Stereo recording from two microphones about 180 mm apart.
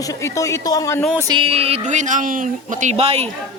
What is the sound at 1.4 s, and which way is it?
Speech, 35° right (ahead or behind).